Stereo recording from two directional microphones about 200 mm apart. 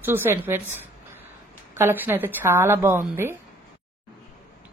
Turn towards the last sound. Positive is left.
turn(degrees=-10)  # may be behind; listen again after turning